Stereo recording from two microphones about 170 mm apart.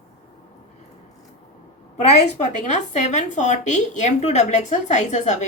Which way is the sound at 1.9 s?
40° left (ahead or behind).